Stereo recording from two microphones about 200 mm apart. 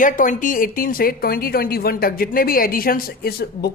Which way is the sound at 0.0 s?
40° left (ahead or behind).